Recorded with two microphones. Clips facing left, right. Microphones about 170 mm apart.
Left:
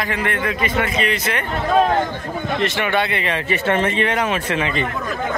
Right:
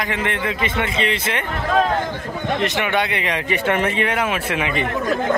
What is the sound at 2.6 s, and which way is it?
Speech, 15° right (ahead or behind).